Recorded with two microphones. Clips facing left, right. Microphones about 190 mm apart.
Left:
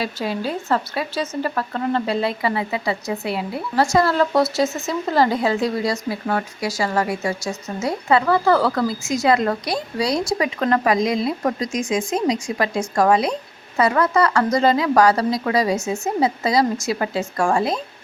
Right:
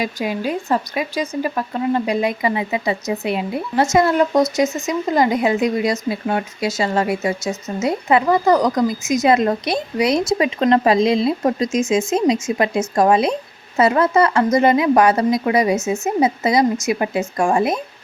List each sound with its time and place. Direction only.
0.0 s speech: 15° right (ahead or behind)